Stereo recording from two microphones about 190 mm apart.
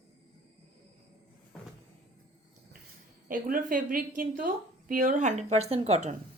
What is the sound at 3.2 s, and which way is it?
A woman's voice, 50° right (ahead or behind).